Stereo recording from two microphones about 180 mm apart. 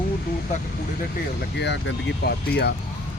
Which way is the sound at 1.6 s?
75° left (ahead or behind).